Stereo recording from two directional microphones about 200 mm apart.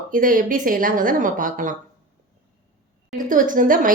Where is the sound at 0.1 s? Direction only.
45° right (ahead or behind).